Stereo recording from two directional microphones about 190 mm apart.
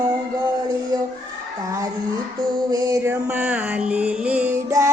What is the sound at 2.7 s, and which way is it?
Music, 20° right (ahead or behind).